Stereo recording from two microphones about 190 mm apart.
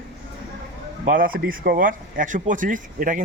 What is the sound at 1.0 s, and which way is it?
Speech, 45° right (ahead or behind).